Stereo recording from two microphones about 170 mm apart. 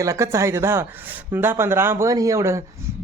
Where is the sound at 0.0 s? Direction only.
15° right (ahead or behind).